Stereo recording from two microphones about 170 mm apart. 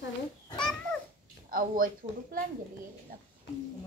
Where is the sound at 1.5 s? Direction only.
55° right (ahead or behind).